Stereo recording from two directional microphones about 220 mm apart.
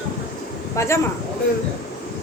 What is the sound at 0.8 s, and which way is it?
Speech, 15° left (ahead or behind).